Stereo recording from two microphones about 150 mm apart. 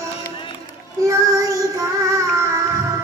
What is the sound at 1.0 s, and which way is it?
Child singing, 20° right (ahead or behind).